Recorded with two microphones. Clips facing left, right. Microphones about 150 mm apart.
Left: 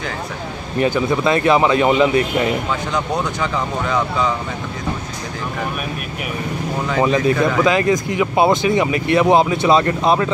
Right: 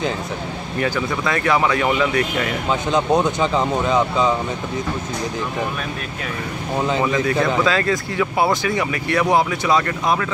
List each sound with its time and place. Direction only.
0.7 s speech: 20° left (ahead or behind)
2.7 s speech: 20° right (ahead or behind)
7.0 s speech: 20° left (ahead or behind)